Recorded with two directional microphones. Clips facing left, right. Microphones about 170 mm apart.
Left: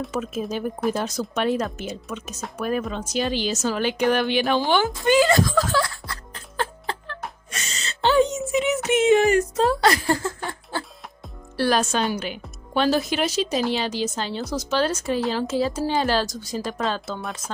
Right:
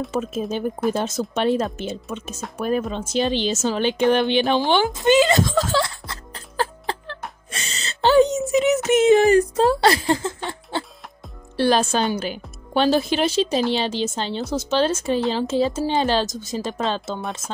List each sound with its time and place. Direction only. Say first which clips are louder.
0.1 s a woman's voice: right 2 dB; 30° right (ahead or behind)
6.3 s music: right 3 dB; 35° right (ahead or behind)
11.5 s a woman's voice: right 3 dB; 25° right (ahead or behind)